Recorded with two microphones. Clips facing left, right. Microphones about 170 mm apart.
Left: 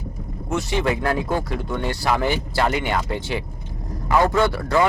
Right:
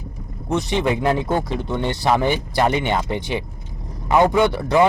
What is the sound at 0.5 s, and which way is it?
Speech, 20° right (ahead or behind).